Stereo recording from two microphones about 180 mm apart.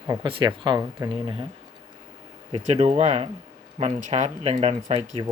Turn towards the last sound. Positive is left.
turn(degrees=-35)  # may be behind; listen again after turning